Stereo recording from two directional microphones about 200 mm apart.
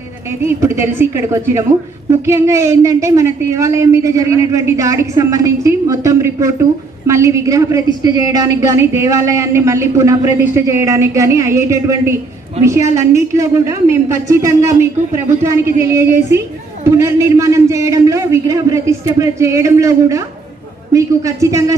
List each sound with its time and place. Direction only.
0.5 s a woman's voice: 15° right (ahead or behind)